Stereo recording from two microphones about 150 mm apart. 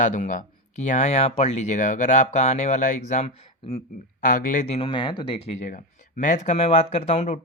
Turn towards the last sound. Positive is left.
turn(degrees=45)  # may be behind; listen again after turning